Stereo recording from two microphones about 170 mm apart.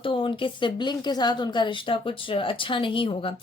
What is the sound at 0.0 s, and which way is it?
A woman's voice, 30° left (ahead or behind).